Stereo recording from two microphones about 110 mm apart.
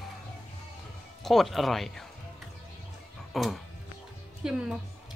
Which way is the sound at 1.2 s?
Centre (ahead or behind).